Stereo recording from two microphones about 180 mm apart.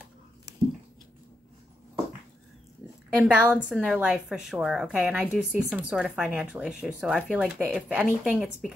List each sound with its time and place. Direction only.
3.2 s a woman's voice: 10° right (ahead or behind)